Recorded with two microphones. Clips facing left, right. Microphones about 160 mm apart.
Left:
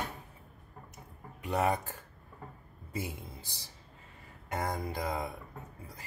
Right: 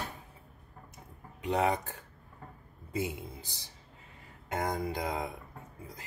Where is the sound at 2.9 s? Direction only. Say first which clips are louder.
Right 4 dB; 20° right (ahead or behind).